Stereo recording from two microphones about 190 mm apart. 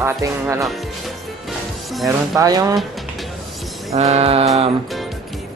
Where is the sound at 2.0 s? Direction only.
20° right (ahead or behind).